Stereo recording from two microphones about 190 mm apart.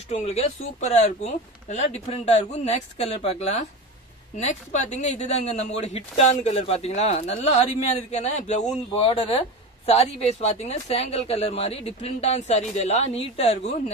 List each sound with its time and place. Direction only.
0.1 s speech: 35° left (ahead or behind)